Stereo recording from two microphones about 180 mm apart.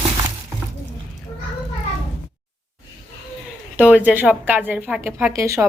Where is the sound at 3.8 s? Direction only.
5° right (ahead or behind).